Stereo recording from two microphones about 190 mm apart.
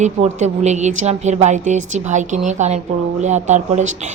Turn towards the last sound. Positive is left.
turn(degrees=-40)  # may be behind; listen again after turning